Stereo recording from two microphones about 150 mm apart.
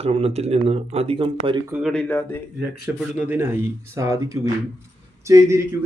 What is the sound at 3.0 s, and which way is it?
Speech, 10° right (ahead or behind).